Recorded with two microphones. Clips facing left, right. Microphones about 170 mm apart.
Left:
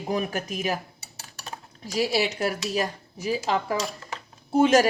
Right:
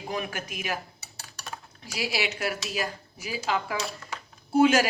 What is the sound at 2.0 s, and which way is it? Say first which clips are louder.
Speech: left 6 dB; 35° left (ahead or behind).